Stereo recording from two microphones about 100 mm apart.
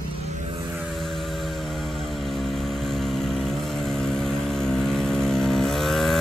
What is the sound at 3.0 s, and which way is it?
Vehicle, 5° left (ahead or behind).